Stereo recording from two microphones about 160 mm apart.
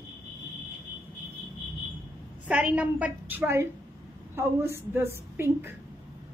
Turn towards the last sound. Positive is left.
turn(degrees=-15)  # may be behind; listen again after turning